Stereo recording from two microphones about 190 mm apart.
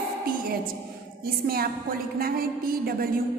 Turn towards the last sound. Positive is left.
turn(degrees=-50)  # may be behind; listen again after turning